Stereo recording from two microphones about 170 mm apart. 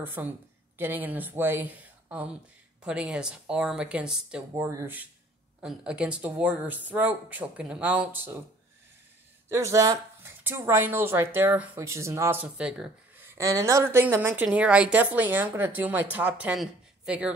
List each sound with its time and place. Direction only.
0.0 s a woman's voice: 10° right (ahead or behind)
4.6 s a woman's voice: 15° right (ahead or behind)
9.5 s a woman's voice: 15° right (ahead or behind)
13.3 s a woman's voice: 20° right (ahead or behind)